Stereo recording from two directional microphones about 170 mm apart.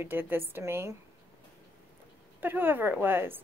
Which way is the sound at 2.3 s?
10° right (ahead or behind).